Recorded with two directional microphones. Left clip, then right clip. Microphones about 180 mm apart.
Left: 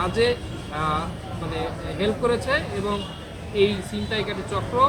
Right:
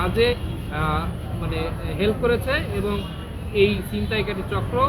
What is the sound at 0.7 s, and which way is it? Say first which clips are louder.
Speech: even; 15° left (ahead or behind).